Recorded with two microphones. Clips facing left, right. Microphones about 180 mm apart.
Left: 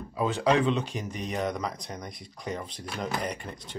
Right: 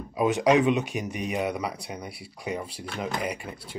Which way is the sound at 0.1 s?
15° right (ahead or behind).